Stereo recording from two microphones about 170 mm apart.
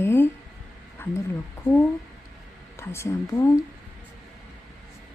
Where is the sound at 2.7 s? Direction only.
15° left (ahead or behind).